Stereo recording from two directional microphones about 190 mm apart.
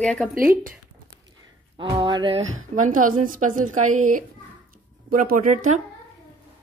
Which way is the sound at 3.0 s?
45° right (ahead or behind).